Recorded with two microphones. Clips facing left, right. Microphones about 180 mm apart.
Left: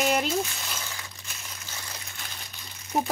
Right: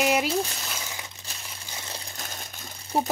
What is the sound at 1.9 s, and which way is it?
Crumpling, 40° right (ahead or behind).